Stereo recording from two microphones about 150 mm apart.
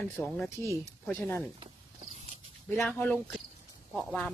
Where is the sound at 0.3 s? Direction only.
5° left (ahead or behind).